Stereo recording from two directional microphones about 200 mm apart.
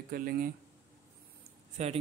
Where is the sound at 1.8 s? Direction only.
35° right (ahead or behind).